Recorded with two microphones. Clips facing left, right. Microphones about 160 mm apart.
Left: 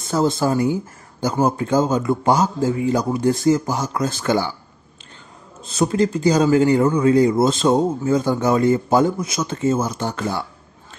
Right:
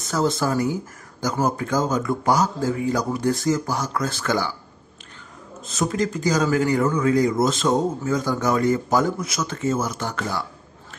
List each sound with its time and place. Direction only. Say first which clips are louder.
0.1 s speech: left 3 dB; 25° left (ahead or behind)
5.7 s speech: left 5 dB; 30° left (ahead or behind)